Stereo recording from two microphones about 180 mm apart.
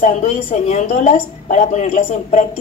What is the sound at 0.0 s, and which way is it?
A woman's voice, 45° left (ahead or behind).